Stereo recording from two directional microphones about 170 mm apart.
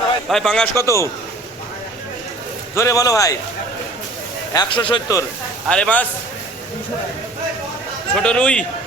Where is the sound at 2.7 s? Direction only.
15° left (ahead or behind).